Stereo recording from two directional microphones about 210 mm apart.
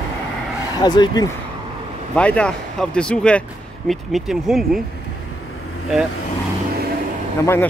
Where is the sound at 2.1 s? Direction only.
5° left (ahead or behind).